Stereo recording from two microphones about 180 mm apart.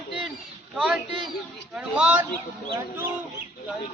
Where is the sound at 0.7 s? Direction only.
Centre (ahead or behind).